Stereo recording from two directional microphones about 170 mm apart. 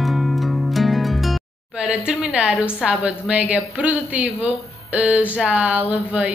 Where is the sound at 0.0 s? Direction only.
Centre (ahead or behind).